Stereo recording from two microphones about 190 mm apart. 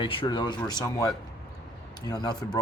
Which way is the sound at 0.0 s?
25° left (ahead or behind).